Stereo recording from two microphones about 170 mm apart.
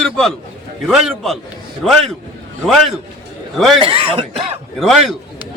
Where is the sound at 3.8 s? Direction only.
35° right (ahead or behind).